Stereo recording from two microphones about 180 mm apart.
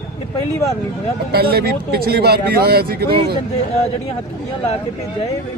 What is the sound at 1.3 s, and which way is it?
Speech, 60° right (ahead or behind).